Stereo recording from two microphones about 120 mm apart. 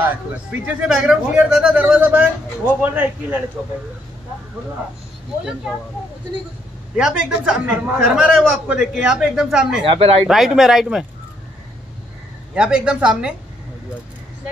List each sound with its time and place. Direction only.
0.0 s speech: 15° right (ahead or behind)
7.0 s a man's voice: 5° right (ahead or behind)
9.8 s speech: 55° right (ahead or behind)
10.2 s a man's voice: 5° right (ahead or behind)
12.5 s speech: 5° right (ahead or behind)